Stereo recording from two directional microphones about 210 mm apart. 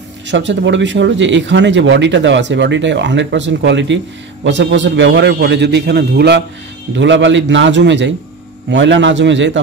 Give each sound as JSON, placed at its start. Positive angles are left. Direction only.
{"t": 0.3, "sound": "a man's voice", "side_deg": -60}